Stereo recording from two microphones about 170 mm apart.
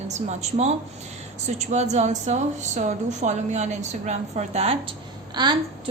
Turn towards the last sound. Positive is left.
turn(degrees=-25)  # may be behind; listen again after turning